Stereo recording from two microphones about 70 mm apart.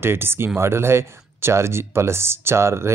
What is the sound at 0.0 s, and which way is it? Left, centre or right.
Speech, right.